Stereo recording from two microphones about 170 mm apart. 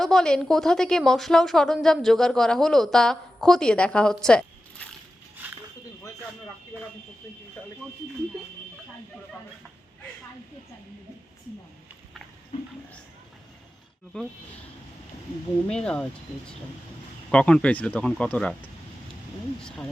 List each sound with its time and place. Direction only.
0.0 s a woman's voice: 5° left (ahead or behind)
5.4 s a sound: 10° right (ahead or behind)
6.7 s speech: 15° left (ahead or behind)
14.1 s a woman's voice: 5° left (ahead or behind)
15.6 s a woman's voice: 5° left (ahead or behind)
17.3 s a woman's voice: 5° left (ahead or behind)